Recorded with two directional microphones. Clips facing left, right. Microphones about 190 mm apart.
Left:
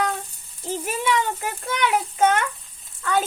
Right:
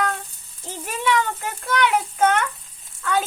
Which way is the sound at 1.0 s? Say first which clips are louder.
Right 3 dB; 15° left (ahead or behind).